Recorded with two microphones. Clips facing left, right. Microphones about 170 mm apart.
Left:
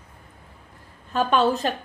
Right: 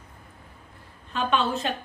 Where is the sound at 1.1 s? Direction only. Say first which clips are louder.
Left 5 dB; 40° left (ahead or behind).